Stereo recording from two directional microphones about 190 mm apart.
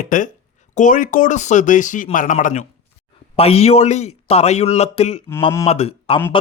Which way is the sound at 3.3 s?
30° left (ahead or behind).